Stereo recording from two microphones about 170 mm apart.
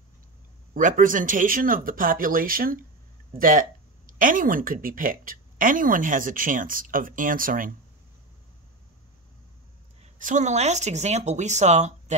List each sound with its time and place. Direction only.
0.7 s speech: 50° right (ahead or behind)
10.2 s speech: 45° right (ahead or behind)